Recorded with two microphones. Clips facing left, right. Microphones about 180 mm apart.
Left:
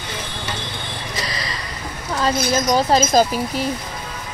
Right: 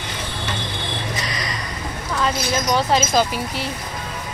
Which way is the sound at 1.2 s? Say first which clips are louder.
Right 1 dB; 30° left (ahead or behind).